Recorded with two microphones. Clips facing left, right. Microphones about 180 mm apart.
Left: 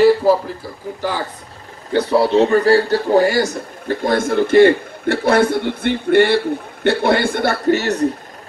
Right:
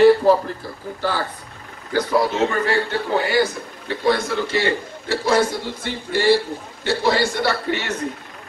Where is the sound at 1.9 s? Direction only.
30° left (ahead or behind).